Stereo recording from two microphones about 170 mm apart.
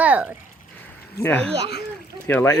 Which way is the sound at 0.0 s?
10° right (ahead or behind).